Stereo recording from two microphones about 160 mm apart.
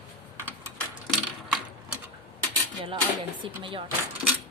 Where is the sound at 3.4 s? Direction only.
30° right (ahead or behind).